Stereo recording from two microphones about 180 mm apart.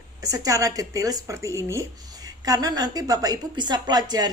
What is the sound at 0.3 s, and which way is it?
Speech, 20° right (ahead or behind).